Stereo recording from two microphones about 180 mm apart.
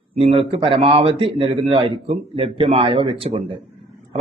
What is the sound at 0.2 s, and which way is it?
A man's voice, 30° right (ahead or behind).